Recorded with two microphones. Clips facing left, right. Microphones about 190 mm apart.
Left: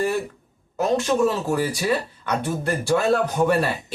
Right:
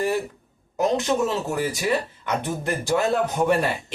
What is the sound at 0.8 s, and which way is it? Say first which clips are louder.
Speech: left 2 dB; 20° right (ahead or behind).